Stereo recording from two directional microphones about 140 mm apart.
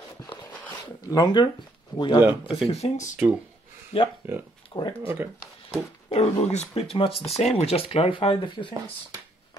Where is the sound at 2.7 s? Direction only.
55° left (ahead or behind).